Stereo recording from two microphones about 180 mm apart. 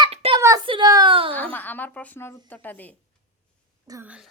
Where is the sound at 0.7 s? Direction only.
25° right (ahead or behind).